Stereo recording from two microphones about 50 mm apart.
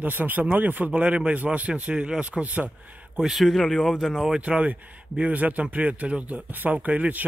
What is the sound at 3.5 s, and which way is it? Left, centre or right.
Speech, centre.